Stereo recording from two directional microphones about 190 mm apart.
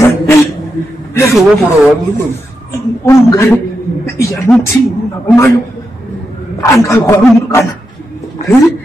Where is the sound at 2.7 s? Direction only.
15° left (ahead or behind).